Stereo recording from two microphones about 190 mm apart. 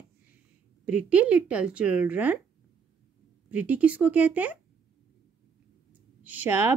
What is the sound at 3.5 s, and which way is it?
A woman's voice, 10° right (ahead or behind).